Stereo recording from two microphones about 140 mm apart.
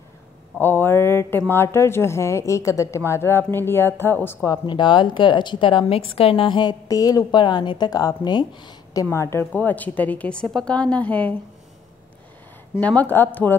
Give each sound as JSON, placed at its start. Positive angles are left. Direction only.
{"t": 0.6, "sound": "a woman's voice", "side_deg": 15}
{"t": 4.6, "sound": "a woman's voice", "side_deg": 35}
{"t": 9.1, "sound": "a woman's voice", "side_deg": 20}
{"t": 12.8, "sound": "a woman's voice", "side_deg": 10}